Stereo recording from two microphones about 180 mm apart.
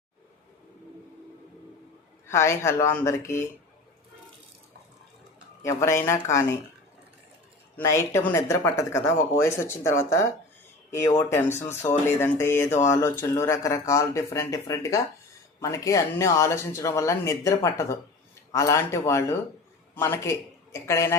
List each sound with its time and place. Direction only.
2.2 s speech: 15° left (ahead or behind)
5.6 s speech: 15° left (ahead or behind)
7.8 s speech: 15° left (ahead or behind)